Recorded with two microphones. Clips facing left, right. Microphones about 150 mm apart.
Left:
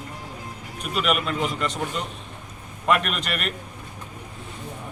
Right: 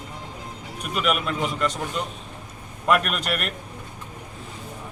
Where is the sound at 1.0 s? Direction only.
Centre (ahead or behind).